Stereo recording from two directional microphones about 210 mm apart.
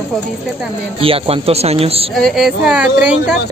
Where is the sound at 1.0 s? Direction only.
25° right (ahead or behind).